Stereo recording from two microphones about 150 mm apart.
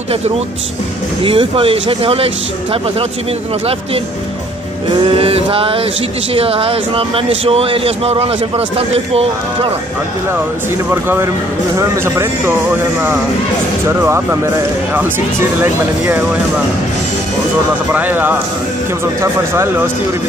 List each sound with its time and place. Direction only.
1.2 s speech: 35° right (ahead or behind)
5.0 s speech: 35° right (ahead or behind)
10.9 s speech: 15° right (ahead or behind)
13.8 s speech: 15° right (ahead or behind)
17.9 s speech: 10° right (ahead or behind)
19.5 s speech: 15° right (ahead or behind)